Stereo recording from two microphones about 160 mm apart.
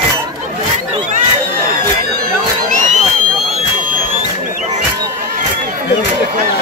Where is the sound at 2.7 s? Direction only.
50° right (ahead or behind).